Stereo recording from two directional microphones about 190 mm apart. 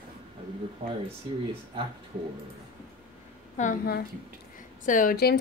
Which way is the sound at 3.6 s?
50° left (ahead or behind).